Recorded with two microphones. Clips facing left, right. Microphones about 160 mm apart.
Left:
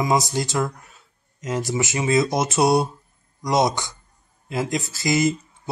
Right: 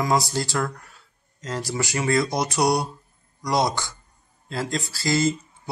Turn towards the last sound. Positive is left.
turn(degrees=20)  # may be behind; listen again after turning